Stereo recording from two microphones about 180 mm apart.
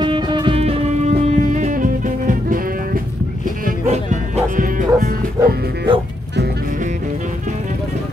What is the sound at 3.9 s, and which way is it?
Music, 40° right (ahead or behind).